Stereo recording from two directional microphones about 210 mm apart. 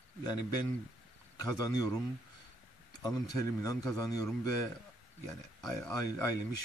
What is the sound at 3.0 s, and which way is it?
Speech, 15° left (ahead or behind).